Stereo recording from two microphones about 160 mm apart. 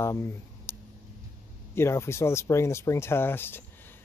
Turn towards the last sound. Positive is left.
turn(degrees=15)  # may be behind; listen again after turning